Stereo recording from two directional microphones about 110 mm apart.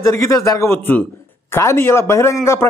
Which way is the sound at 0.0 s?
30° left (ahead or behind).